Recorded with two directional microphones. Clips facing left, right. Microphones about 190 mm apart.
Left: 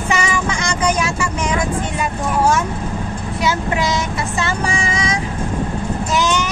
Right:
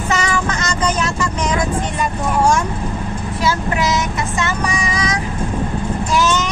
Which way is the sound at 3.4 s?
25° left (ahead or behind).